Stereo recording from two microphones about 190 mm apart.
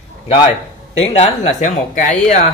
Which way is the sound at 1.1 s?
35° left (ahead or behind).